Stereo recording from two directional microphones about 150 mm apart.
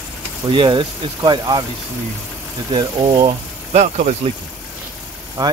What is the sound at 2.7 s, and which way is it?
Speech, 30° right (ahead or behind).